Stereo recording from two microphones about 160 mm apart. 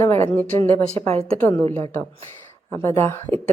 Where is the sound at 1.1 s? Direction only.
40° right (ahead or behind).